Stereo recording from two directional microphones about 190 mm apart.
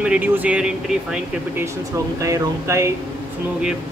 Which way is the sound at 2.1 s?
15° right (ahead or behind).